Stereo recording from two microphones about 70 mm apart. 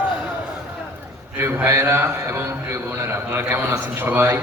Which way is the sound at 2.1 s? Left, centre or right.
Right.